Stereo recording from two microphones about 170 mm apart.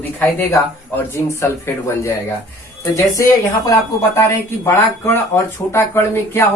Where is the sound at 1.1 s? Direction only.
15° left (ahead or behind).